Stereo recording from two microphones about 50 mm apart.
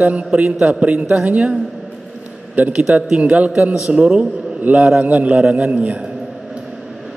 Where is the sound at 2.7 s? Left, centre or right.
Right.